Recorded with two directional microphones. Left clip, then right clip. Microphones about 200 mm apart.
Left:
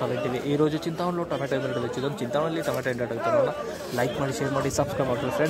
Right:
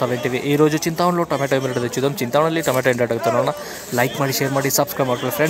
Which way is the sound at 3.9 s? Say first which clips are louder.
Right 8 dB; 15° right (ahead or behind).